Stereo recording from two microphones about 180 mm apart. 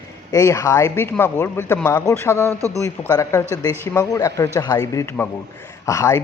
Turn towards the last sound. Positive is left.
turn(degrees=15)  # may be behind; listen again after turning